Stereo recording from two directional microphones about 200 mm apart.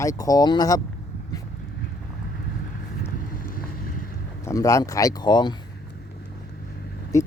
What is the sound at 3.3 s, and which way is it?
Boat, 45° left (ahead or behind).